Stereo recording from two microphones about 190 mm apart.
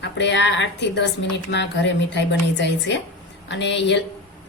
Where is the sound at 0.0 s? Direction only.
70° left (ahead or behind).